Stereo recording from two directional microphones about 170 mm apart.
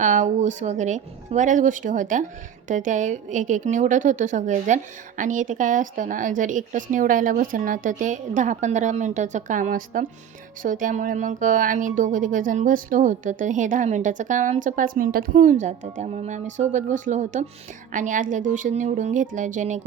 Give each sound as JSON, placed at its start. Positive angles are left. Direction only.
{"t": 0.0, "sound": "a woman's voice", "side_deg": -45}